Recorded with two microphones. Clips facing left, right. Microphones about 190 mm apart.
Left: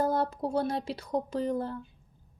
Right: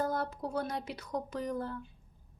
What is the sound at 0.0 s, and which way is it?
A woman's voice, 30° left (ahead or behind).